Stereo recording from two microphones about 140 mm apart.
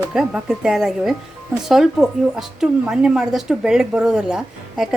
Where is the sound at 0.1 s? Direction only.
5° right (ahead or behind).